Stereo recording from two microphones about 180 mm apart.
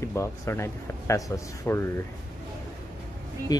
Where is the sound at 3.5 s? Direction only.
20° left (ahead or behind).